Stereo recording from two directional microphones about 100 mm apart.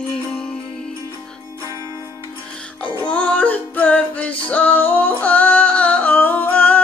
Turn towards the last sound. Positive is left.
turn(degrees=15)  # may be behind; listen again after turning